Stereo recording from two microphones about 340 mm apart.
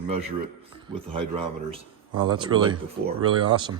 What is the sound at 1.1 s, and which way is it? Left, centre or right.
Speech, centre.